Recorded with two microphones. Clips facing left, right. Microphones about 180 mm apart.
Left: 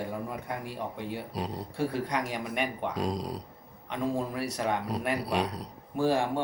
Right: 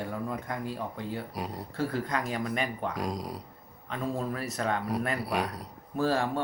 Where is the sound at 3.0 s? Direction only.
25° left (ahead or behind).